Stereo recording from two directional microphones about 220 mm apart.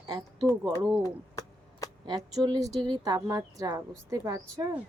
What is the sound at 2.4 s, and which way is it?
A woman's voice, 15° right (ahead or behind).